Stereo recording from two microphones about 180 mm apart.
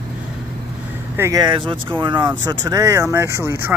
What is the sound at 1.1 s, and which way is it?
Speech, 20° right (ahead or behind).